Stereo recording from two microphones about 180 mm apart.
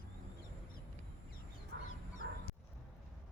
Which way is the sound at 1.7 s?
70° right (ahead or behind).